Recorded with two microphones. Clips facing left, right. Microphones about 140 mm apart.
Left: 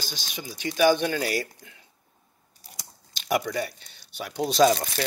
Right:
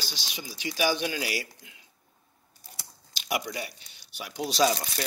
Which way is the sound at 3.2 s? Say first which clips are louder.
Left 6 dB; 50° left (ahead or behind).